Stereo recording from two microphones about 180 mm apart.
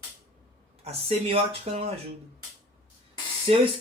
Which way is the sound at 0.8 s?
35° right (ahead or behind).